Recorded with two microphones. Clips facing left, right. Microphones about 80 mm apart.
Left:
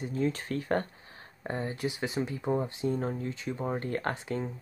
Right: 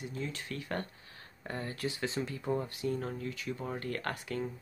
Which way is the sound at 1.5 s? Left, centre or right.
Left.